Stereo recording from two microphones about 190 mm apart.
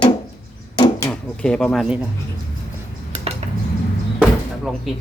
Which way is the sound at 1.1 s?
5° left (ahead or behind).